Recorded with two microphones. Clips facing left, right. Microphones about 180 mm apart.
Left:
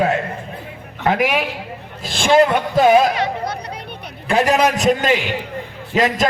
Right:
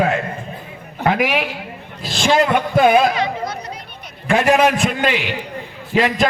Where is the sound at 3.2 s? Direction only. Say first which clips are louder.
Even; 65° left (ahead or behind).